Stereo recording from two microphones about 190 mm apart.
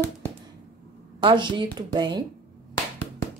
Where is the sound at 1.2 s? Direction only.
25° right (ahead or behind).